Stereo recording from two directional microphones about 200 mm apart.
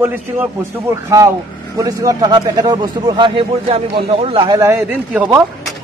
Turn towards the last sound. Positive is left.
turn(degrees=-5)  # may be behind; listen again after turning